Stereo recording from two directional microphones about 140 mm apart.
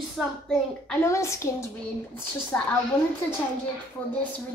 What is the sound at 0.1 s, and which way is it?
Speech, centre (ahead or behind).